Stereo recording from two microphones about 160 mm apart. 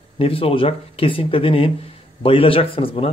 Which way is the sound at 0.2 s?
35° left (ahead or behind).